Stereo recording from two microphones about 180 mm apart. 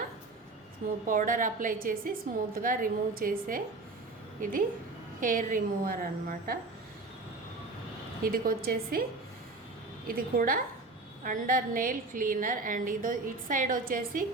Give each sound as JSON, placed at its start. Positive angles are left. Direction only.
{"t": 1.0, "sound": "a woman's voice", "side_deg": -50}
{"t": 8.2, "sound": "a woman's voice", "side_deg": -55}
{"t": 10.1, "sound": "a woman's voice", "side_deg": -50}